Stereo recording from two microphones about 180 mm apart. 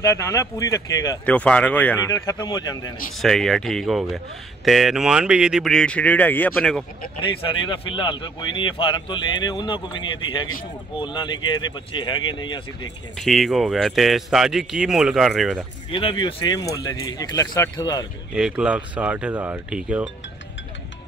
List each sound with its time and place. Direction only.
0.0 s speech: 15° left (ahead or behind)
1.2 s speech: 5° left (ahead or behind)
3.2 s speech: centre (ahead or behind)
7.2 s speech: 25° left (ahead or behind)
13.2 s speech: centre (ahead or behind)
15.9 s speech: 30° left (ahead or behind)
18.3 s speech: 5° right (ahead or behind)